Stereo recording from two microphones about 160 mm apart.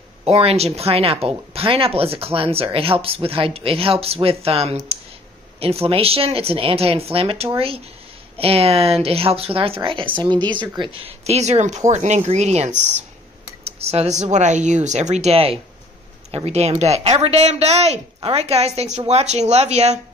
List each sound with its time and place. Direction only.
0.2 s speech: 40° right (ahead or behind)